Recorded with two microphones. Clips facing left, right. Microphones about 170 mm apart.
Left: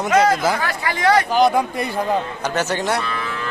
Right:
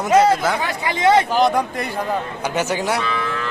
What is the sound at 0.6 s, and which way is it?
Speech, 20° right (ahead or behind).